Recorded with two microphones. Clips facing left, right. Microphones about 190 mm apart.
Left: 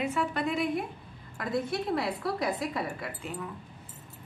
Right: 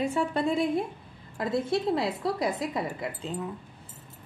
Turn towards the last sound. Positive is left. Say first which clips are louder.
# right 4 dB
turn(degrees=-20)  # may be behind; listen again after turning